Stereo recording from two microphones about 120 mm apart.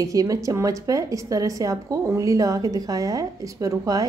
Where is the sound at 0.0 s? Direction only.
30° right (ahead or behind).